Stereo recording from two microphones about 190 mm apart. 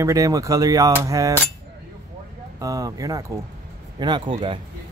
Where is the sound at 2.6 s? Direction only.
20° right (ahead or behind).